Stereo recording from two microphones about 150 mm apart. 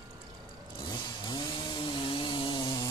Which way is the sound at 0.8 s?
30° left (ahead or behind).